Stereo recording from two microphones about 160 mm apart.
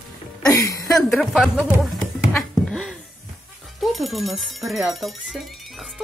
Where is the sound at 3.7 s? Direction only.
Centre (ahead or behind).